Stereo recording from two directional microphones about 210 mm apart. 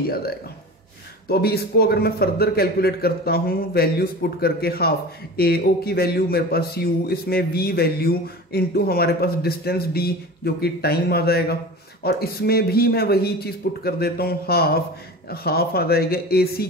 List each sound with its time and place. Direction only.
0.1 s a man's voice: 45° left (ahead or behind)